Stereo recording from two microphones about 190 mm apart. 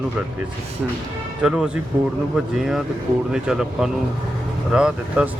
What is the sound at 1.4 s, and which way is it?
Speech, 5° right (ahead or behind).